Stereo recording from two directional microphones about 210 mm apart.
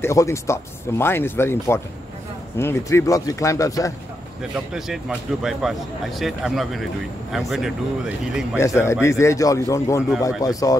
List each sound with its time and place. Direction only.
0.0 s speech: 15° left (ahead or behind)
4.4 s speech: centre (ahead or behind)
8.5 s speech: 15° left (ahead or behind)